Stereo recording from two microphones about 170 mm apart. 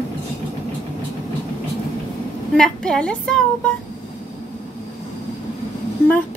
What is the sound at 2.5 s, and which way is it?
A woman's voice, 5° left (ahead or behind).